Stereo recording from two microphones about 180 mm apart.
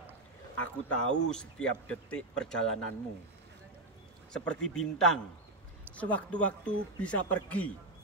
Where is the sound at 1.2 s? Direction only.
5° left (ahead or behind).